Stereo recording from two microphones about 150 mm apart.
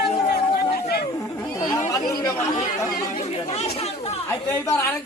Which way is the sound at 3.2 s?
45° left (ahead or behind).